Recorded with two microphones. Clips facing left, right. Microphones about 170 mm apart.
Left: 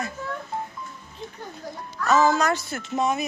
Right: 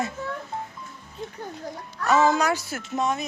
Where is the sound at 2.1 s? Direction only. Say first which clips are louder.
Even; 15° right (ahead or behind); by 3.2 s 5° left (ahead or behind).